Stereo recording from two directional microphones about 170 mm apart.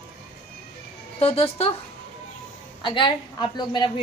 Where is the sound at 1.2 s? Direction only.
35° left (ahead or behind).